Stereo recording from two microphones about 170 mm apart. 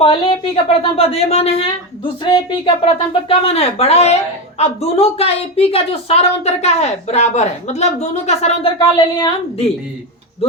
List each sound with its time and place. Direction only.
0.0 s a woman's voice: 35° left (ahead or behind)